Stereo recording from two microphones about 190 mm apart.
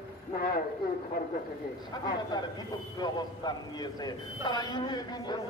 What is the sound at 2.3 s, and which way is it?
A man's voice, 20° left (ahead or behind).